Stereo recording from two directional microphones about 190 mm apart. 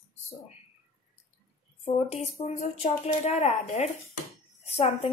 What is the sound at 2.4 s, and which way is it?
A woman's voice, 35° left (ahead or behind).